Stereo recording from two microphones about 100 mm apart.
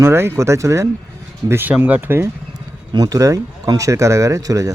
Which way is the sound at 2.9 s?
40° right (ahead or behind).